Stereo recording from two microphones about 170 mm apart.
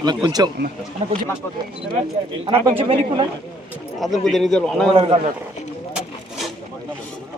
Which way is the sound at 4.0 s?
Centre (ahead or behind).